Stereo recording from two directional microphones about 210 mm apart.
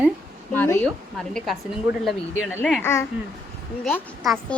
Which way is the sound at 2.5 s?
10° left (ahead or behind).